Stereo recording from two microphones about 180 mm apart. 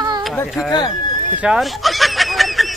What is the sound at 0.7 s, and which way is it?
Speech, 25° left (ahead or behind).